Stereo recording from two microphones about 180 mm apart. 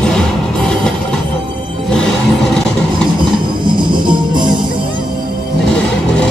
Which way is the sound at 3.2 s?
25° right (ahead or behind).